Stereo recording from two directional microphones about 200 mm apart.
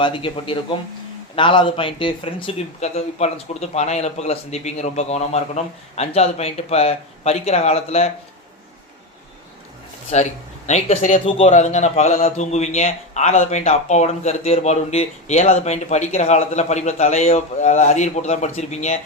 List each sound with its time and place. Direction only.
0.0 s a man's voice: 25° left (ahead or behind)
10.1 s a man's voice: 35° left (ahead or behind)